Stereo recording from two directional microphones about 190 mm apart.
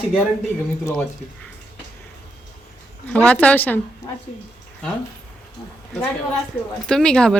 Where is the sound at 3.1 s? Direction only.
5° left (ahead or behind).